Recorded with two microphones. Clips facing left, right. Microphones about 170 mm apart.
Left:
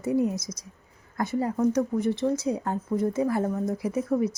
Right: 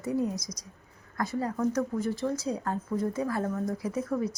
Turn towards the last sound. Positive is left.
turn(degrees=20)  # may be behind; listen again after turning